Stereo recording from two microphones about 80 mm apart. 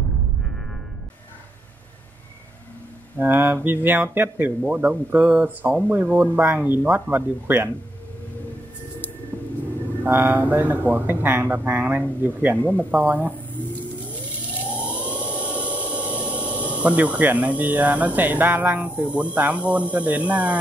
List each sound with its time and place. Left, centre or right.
3.2 s speech: right
10.0 s speech: right
15.0 s a sound: centre